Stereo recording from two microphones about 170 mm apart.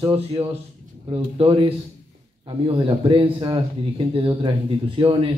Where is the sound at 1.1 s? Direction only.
30° right (ahead or behind).